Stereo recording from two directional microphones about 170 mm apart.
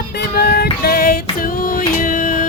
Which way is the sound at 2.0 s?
55° left (ahead or behind).